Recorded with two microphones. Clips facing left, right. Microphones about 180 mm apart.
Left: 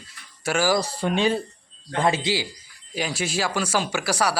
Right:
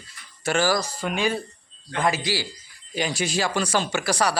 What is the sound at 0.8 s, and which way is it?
Speech, 30° left (ahead or behind).